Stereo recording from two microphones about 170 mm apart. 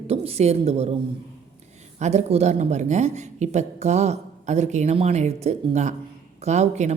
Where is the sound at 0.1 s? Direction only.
35° right (ahead or behind).